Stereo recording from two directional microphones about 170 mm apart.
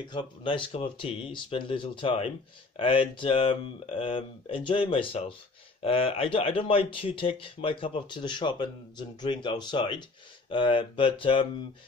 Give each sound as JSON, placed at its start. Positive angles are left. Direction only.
{"t": 0.1, "sound": "speech", "side_deg": 30}